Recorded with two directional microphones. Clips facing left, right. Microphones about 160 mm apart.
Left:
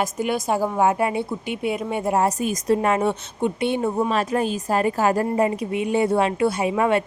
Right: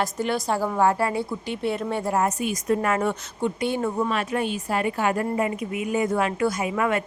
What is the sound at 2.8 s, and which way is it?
Speech, 25° left (ahead or behind).